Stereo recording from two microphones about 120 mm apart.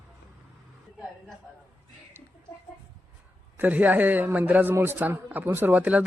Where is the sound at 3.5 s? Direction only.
15° right (ahead or behind).